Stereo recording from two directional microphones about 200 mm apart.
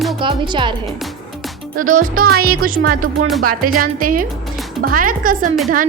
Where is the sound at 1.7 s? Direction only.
40° right (ahead or behind).